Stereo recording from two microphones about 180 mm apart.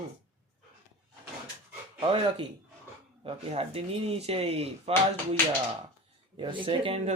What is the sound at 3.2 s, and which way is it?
Speech, 35° right (ahead or behind).